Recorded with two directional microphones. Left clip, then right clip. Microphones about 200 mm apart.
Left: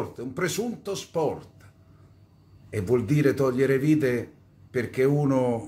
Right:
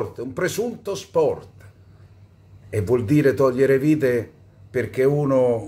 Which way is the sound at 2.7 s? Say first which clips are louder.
Right 5 dB; 5° right (ahead or behind).